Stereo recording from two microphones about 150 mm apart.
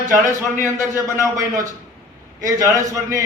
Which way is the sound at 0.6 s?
20° left (ahead or behind).